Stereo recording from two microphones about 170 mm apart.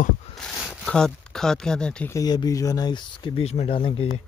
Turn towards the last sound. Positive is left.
turn(degrees=35)  # may be behind; listen again after turning